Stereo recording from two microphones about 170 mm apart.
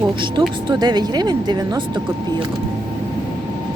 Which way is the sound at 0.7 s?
25° right (ahead or behind).